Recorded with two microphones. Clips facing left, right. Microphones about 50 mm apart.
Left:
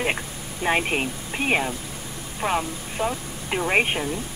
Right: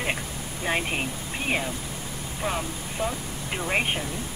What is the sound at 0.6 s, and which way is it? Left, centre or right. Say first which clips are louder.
Speech: left 5 dB; left.